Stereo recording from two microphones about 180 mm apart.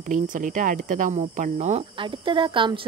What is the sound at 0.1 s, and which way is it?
Speech, 45° right (ahead or behind).